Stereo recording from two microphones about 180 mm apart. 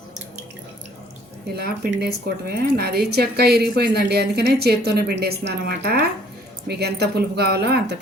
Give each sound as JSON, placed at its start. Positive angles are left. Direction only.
{"t": 1.5, "sound": "speech", "side_deg": -60}